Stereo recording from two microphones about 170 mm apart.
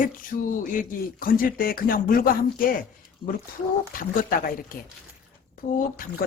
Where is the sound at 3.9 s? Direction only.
55° left (ahead or behind).